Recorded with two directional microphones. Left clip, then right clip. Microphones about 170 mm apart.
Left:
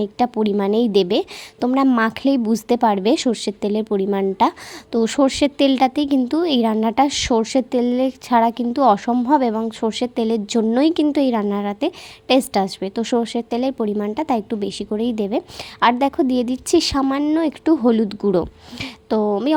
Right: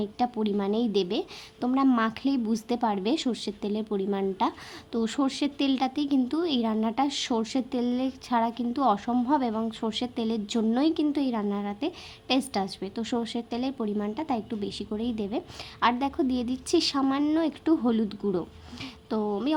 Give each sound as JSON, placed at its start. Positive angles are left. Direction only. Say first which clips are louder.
{"t": 0.0, "sound": "a woman's voice", "louder": "left 9 dB", "side_deg": 45}